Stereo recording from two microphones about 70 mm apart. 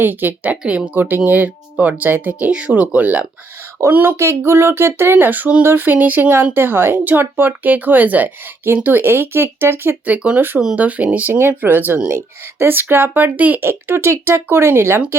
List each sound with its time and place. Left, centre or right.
0.0 s speech: right
0.6 s speech: centre
0.9 s speech: right
10.1 s speech: right
13.6 s speech: right